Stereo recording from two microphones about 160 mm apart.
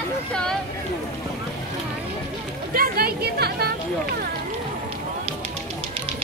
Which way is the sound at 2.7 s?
70° right (ahead or behind).